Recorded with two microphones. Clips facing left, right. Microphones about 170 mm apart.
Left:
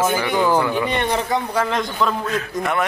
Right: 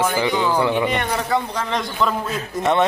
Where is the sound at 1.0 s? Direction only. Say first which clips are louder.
Left 1 dB; 20° left (ahead or behind).